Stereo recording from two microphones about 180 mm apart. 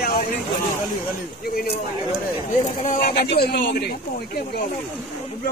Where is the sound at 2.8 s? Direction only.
60° left (ahead or behind).